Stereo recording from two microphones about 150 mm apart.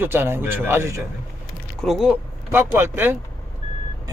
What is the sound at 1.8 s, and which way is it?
Speech, 5° right (ahead or behind).